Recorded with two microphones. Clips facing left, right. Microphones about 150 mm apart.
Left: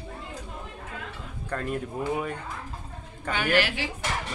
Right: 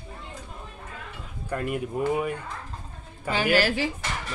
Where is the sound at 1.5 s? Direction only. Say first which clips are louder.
Right 2 dB; 10° right (ahead or behind).